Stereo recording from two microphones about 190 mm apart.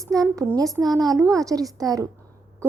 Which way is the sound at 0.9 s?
20° right (ahead or behind).